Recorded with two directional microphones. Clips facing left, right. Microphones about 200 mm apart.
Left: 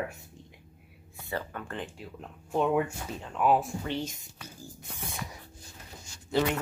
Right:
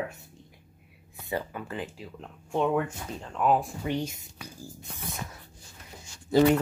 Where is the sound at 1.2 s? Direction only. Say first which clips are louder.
Right 3 dB; 10° right (ahead or behind).